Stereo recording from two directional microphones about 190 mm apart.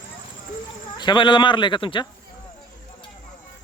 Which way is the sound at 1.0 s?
25° left (ahead or behind).